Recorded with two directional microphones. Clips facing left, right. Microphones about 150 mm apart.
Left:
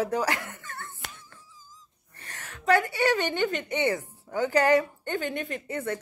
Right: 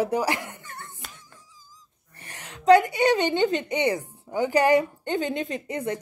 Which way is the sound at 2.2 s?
15° right (ahead or behind).